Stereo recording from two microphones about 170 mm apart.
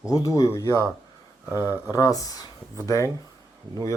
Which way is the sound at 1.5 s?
15° right (ahead or behind).